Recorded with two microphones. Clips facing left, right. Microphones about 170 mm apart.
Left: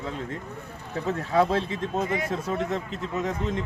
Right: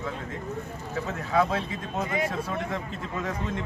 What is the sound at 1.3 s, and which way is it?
Speech, 30° left (ahead or behind).